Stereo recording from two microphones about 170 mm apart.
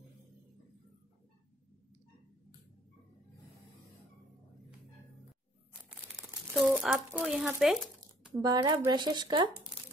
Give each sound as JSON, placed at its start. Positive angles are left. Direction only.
{"t": 5.9, "sound": "crumpling", "side_deg": 0}
{"t": 8.4, "sound": "speech", "side_deg": -25}